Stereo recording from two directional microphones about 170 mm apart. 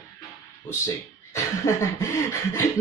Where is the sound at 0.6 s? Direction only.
15° left (ahead or behind).